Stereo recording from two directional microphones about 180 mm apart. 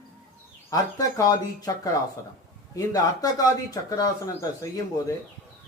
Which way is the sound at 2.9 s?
20° left (ahead or behind).